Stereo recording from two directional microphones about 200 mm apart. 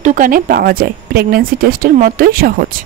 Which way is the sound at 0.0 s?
40° right (ahead or behind).